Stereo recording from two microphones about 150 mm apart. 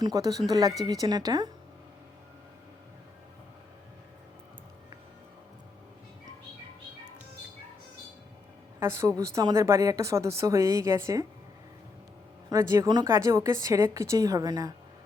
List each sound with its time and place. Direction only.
0.0 s speech: 25° right (ahead or behind)
8.8 s speech: 20° right (ahead or behind)
12.5 s speech: 20° right (ahead or behind)